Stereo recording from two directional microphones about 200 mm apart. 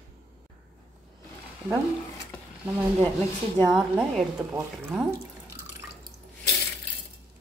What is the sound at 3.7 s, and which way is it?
Speech, 5° right (ahead or behind).